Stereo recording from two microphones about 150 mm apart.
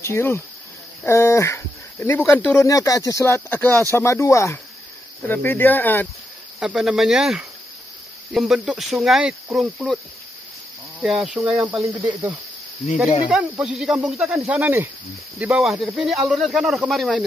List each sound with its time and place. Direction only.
0.0 s speech: 15° left (ahead or behind)
6.6 s speech: 5° right (ahead or behind)
11.0 s speech: centre (ahead or behind)
13.3 s speech: 5° right (ahead or behind)